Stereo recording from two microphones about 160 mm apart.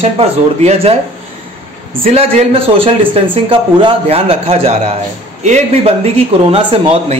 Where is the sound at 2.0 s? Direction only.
40° right (ahead or behind).